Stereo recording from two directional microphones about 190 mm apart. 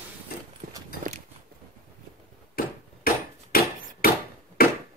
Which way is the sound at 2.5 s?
50° left (ahead or behind).